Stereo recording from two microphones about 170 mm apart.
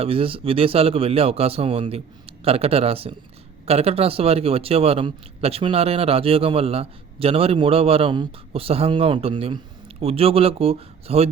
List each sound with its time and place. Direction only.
0.0 s a man's voice: 35° right (ahead or behind)